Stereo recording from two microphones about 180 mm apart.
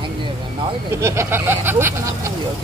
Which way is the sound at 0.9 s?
15° right (ahead or behind).